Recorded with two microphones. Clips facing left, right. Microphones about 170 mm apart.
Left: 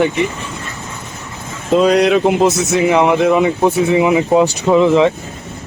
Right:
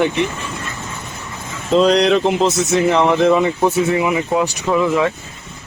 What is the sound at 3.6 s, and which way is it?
Speech, 20° left (ahead or behind).